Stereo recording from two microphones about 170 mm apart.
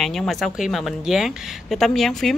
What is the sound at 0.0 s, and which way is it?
Speech, centre (ahead or behind).